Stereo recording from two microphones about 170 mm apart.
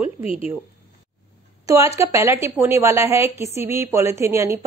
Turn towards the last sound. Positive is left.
turn(degrees=-15)  # may be behind; listen again after turning